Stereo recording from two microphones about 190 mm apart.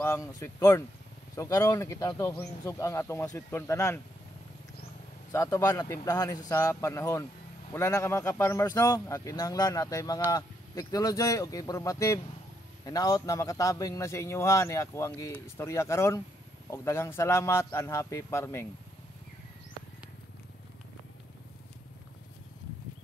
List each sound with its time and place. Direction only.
0.0 s a man's voice: 15° left (ahead or behind)
5.3 s a man's voice: 15° left (ahead or behind)